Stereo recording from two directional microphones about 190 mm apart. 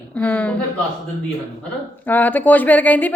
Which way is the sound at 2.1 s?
10° left (ahead or behind).